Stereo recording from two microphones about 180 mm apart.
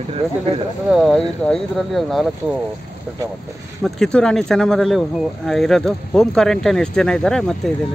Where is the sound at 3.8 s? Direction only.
Centre (ahead or behind).